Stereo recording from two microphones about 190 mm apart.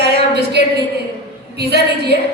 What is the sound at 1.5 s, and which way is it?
Speech, 60° right (ahead or behind).